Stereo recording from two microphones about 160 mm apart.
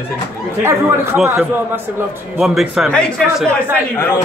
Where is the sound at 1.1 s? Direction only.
Centre (ahead or behind).